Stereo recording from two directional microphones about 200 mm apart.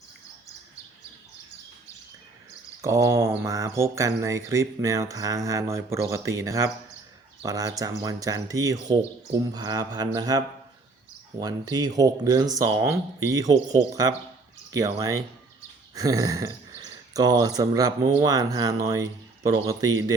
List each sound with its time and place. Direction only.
2.8 s speech: 15° right (ahead or behind)